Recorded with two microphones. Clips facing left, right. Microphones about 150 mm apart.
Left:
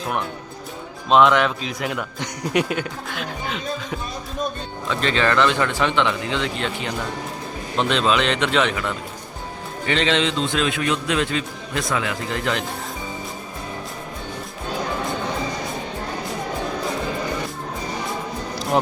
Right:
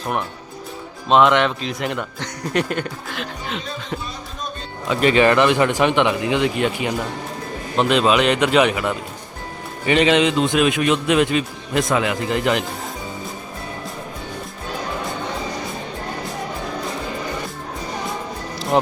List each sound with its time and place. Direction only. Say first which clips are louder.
0.0 s speech: right 1 dB; centre (ahead or behind)
4.9 s a man's voice: right 6 dB; 15° right (ahead or behind)
18.7 s speech: right 2 dB; centre (ahead or behind)